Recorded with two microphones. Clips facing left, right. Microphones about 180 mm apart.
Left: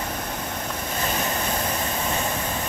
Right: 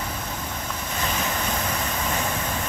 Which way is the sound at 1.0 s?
40° left (ahead or behind).